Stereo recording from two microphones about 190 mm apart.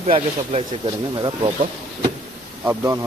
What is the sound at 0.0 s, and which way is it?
Speech, 35° right (ahead or behind).